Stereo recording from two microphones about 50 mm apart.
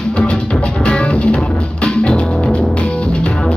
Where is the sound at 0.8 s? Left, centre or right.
Left.